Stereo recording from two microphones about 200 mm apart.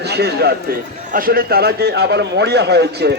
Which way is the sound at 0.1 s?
55° right (ahead or behind).